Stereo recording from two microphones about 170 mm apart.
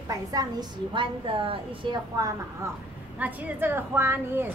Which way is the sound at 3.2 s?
10° right (ahead or behind).